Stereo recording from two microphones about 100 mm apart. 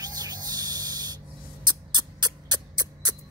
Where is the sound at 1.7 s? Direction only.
45° right (ahead or behind).